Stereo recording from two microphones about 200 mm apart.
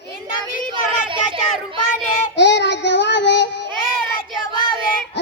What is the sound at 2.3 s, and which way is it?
Child singing, 60° left (ahead or behind).